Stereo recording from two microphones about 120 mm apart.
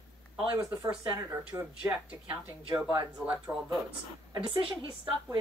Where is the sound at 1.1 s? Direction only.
20° right (ahead or behind).